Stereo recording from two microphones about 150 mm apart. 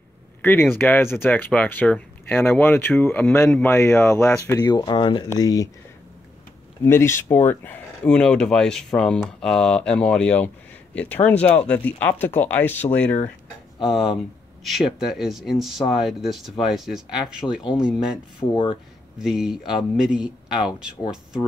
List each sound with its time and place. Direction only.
0.4 s speech: 15° left (ahead or behind)
4.5 s speech: 25° left (ahead or behind)
6.8 s speech: 15° left (ahead or behind)
14.6 s speech: centre (ahead or behind)
18.4 s speech: 30° left (ahead or behind)
19.1 s speech: 5° right (ahead or behind)